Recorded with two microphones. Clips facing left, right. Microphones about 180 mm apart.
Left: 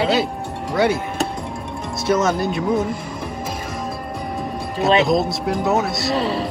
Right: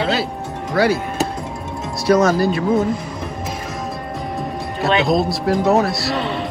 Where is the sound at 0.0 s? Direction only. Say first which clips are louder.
Left 1 dB; centre (ahead or behind).